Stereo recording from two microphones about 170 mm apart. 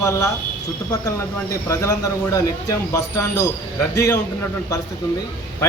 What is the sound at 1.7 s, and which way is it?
A man's voice, 20° left (ahead or behind).